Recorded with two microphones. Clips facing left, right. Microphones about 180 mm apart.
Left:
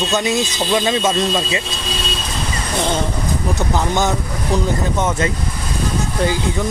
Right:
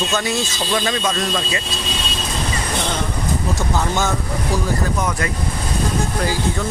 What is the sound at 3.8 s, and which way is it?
Speech, 15° left (ahead or behind).